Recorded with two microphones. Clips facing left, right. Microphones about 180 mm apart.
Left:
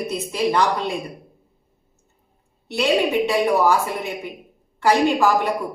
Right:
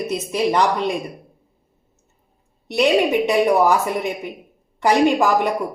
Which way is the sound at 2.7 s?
15° right (ahead or behind).